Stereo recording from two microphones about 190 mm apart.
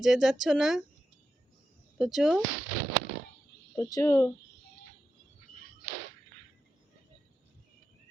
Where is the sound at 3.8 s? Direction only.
15° left (ahead or behind).